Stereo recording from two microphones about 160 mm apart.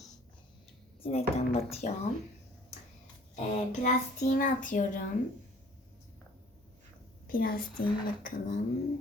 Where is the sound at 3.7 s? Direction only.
50° left (ahead or behind).